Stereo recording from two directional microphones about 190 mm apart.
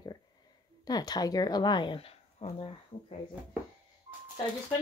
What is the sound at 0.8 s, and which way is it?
Speech, 20° left (ahead or behind).